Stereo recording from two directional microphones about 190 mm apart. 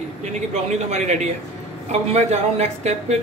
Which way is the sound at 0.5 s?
35° right (ahead or behind).